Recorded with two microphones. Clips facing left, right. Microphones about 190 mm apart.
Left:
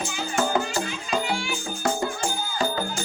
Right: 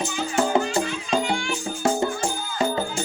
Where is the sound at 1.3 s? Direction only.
5° left (ahead or behind).